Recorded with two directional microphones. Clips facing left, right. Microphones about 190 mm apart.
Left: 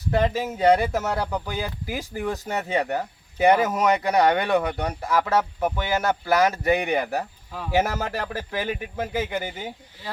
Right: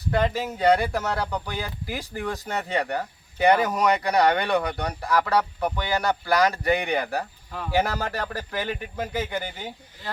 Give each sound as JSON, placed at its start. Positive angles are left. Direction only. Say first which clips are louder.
{"t": 0.2, "sound": "speech", "louder": "left 2 dB", "side_deg": 15}
{"t": 4.1, "sound": "speech", "louder": "left 2 dB", "side_deg": 15}
{"t": 6.8, "sound": "speech", "louder": "left 2 dB", "side_deg": 5}
{"t": 7.9, "sound": "speech", "louder": "left 1 dB", "side_deg": 20}